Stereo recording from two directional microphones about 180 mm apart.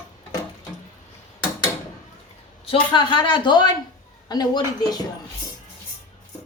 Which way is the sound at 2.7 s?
25° left (ahead or behind).